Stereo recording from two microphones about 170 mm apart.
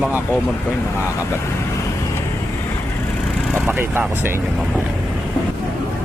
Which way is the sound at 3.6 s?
10° right (ahead or behind).